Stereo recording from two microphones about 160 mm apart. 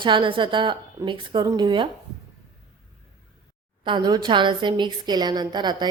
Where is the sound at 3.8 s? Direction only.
30° right (ahead or behind).